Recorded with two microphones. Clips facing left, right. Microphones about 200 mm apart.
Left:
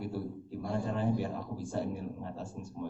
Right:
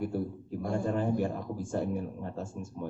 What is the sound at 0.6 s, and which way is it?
A man's voice, 50° right (ahead or behind).